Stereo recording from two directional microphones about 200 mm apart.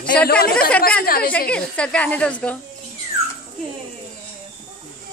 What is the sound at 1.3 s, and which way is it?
A woman's voice, 5° left (ahead or behind).